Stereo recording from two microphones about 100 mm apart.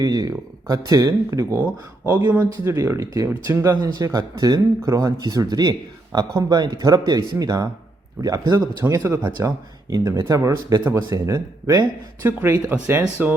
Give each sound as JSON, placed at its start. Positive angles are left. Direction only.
{"t": 0.0, "sound": "speech", "side_deg": -40}
{"t": 1.5, "sound": "speech", "side_deg": -20}
{"t": 2.4, "sound": "speech", "side_deg": -30}
{"t": 3.7, "sound": "speech", "side_deg": -40}
{"t": 8.8, "sound": "speech", "side_deg": -15}
{"t": 9.4, "sound": "speech", "side_deg": -30}
{"t": 12.2, "sound": "speech", "side_deg": -20}